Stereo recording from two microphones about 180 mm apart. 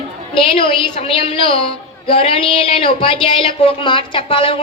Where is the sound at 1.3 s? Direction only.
30° left (ahead or behind).